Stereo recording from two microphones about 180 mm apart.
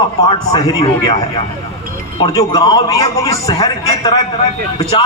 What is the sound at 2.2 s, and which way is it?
A man's voice, 25° left (ahead or behind).